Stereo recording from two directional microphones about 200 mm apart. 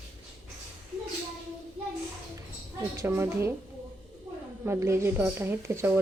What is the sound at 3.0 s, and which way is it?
Speech, 15° right (ahead or behind).